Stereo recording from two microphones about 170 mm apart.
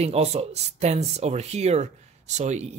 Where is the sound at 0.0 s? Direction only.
40° right (ahead or behind).